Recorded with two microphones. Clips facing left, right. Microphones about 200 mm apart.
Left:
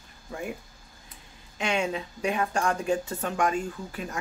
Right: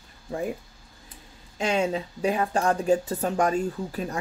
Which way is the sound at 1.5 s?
35° right (ahead or behind).